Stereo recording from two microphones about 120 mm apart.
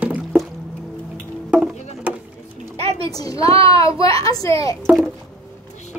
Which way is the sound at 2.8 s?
55° right (ahead or behind).